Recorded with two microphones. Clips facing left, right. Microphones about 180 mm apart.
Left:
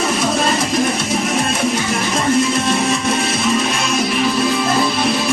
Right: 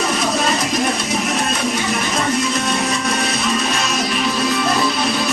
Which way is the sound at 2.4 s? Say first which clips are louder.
Left 3 dB; 30° left (ahead or behind).